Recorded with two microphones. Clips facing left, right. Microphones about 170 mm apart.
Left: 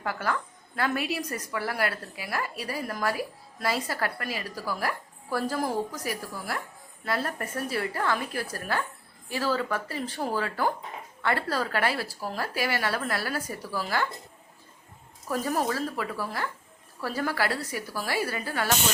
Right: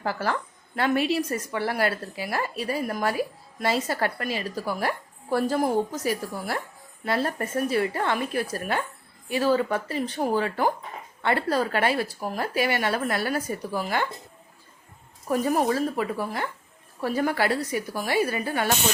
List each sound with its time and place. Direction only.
0.0 s a woman's voice: 30° right (ahead or behind)
15.3 s a woman's voice: 20° right (ahead or behind)